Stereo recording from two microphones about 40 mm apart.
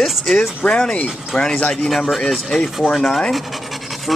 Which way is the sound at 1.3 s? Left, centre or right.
Centre.